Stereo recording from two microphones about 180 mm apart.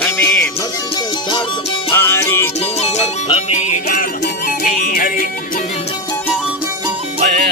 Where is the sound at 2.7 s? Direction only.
35° left (ahead or behind).